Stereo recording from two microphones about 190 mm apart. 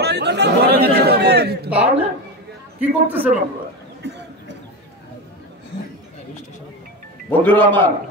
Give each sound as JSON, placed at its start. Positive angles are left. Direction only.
{"t": 0.0, "sound": "chatter", "side_deg": -65}
{"t": 1.7, "sound": "a woman's voice", "side_deg": -5}
{"t": 4.0, "sound": "a sound", "side_deg": -65}
{"t": 7.2, "sound": "a man's voice", "side_deg": 10}